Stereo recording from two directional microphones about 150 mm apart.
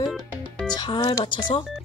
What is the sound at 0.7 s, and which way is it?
Speech, 30° left (ahead or behind).